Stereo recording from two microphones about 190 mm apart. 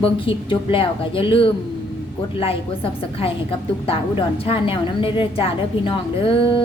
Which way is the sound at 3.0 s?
30° left (ahead or behind).